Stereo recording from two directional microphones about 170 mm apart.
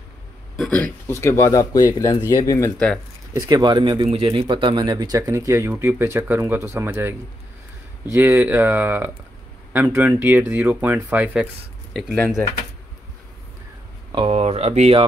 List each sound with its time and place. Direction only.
0.6 s a man's voice: 5° left (ahead or behind)
3.3 s speech: 20° right (ahead or behind); by 12.2 s centre (ahead or behind)
14.1 s speech: 35° right (ahead or behind)